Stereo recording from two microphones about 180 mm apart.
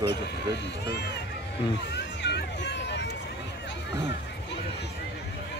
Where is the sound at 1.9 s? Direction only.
70° left (ahead or behind).